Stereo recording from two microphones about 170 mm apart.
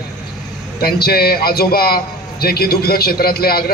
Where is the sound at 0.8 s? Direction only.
65° left (ahead or behind).